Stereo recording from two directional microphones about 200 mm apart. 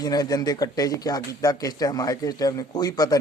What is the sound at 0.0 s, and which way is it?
Speech, 20° left (ahead or behind).